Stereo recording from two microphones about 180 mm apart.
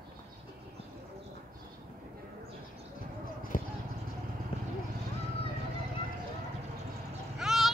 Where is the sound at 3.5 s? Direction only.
50° left (ahead or behind).